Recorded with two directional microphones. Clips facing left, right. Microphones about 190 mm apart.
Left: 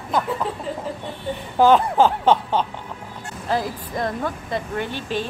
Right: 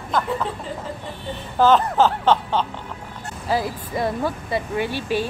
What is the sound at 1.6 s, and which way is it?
Speech, 10° left (ahead or behind).